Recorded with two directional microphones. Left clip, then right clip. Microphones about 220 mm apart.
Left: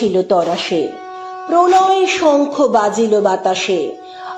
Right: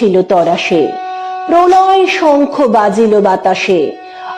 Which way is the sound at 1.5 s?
30° right (ahead or behind).